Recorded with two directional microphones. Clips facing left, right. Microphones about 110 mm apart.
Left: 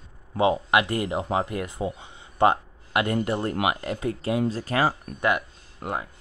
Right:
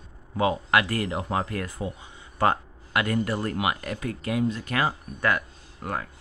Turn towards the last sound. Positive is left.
turn(degrees=20)  # may be behind; listen again after turning